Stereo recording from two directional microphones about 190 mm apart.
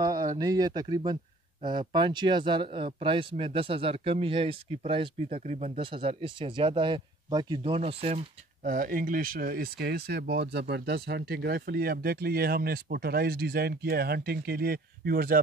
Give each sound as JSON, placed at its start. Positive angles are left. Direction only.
{"t": 0.0, "sound": "speech", "side_deg": -20}
{"t": 8.6, "sound": "speech", "side_deg": -45}